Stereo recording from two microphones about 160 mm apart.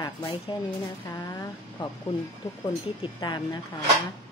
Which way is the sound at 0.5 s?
30° left (ahead or behind).